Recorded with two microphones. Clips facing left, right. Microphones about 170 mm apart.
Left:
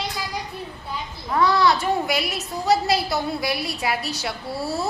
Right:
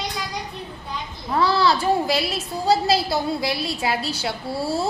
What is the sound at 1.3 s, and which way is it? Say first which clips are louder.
A woman's voice: even; 30° right (ahead or behind).